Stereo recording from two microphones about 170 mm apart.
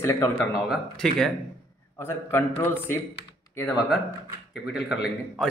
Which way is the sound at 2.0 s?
15° left (ahead or behind).